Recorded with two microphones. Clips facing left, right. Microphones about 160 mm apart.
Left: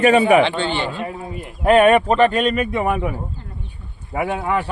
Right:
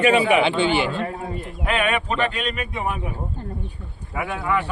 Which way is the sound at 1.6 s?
40° left (ahead or behind).